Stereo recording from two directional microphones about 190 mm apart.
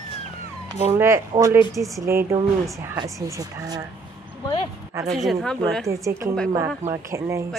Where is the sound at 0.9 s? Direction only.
15° right (ahead or behind).